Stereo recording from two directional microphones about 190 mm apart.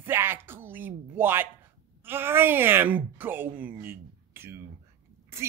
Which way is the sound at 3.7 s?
10° right (ahead or behind).